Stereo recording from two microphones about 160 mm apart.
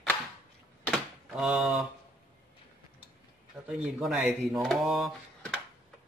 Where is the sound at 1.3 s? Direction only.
5° right (ahead or behind).